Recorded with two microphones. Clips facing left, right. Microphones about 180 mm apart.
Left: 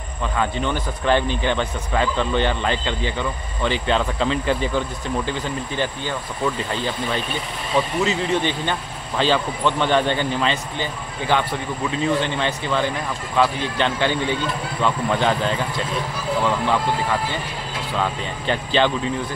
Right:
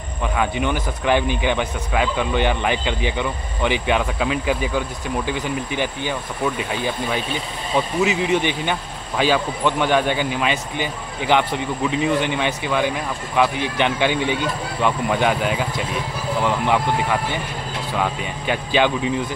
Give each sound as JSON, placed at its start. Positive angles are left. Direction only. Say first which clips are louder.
{"t": 0.4, "sound": "speech", "louder": "right 1 dB", "side_deg": -15}
{"t": 18.5, "sound": "speech", "louder": "right 1 dB", "side_deg": -10}